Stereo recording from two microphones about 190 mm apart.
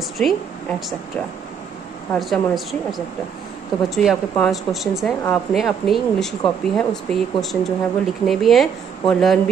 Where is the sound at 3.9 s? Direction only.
Centre (ahead or behind).